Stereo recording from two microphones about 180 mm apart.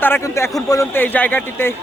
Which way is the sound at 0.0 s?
15° left (ahead or behind).